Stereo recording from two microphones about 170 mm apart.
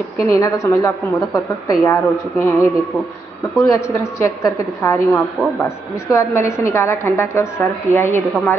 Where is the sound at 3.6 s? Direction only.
15° left (ahead or behind).